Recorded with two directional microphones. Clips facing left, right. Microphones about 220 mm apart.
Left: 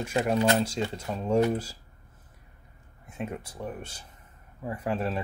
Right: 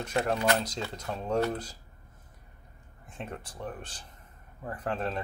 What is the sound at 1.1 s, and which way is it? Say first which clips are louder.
Speech: left 4 dB; 10° left (ahead or behind).